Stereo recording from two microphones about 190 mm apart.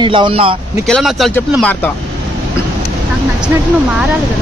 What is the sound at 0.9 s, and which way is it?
Speech, centre (ahead or behind).